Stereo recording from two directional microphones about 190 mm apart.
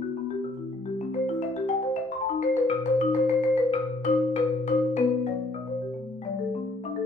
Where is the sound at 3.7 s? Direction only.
40° left (ahead or behind).